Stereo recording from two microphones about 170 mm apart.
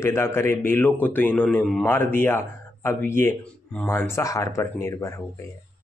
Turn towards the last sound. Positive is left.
turn(degrees=15)  # may be behind; listen again after turning